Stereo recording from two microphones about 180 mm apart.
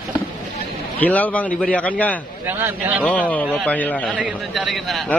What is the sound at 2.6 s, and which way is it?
Speech, 10° right (ahead or behind).